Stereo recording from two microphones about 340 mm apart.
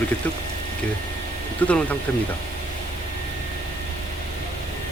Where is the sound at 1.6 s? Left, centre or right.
Centre.